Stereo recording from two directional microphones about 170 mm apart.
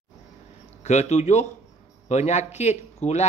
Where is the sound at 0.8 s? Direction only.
40° left (ahead or behind).